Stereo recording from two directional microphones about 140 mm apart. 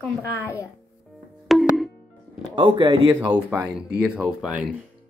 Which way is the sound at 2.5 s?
35° right (ahead or behind).